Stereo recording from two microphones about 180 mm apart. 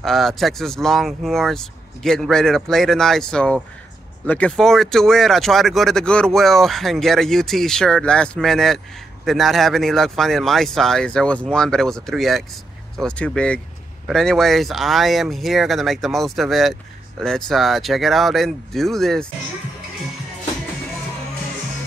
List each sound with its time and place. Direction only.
0.0 s speech: centre (ahead or behind)